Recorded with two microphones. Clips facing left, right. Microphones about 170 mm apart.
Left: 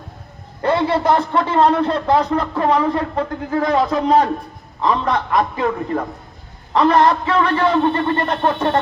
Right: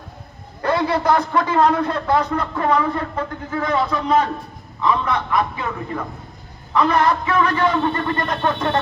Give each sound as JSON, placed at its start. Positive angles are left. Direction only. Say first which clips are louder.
{"t": 0.6, "sound": "a man's voice", "louder": "left 2 dB", "side_deg": 25}